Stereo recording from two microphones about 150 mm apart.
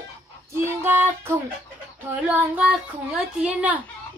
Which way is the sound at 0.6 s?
15° right (ahead or behind).